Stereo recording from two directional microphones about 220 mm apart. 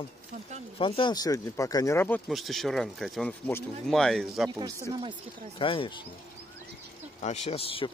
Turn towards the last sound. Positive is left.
turn(degrees=25)  # may be behind; listen again after turning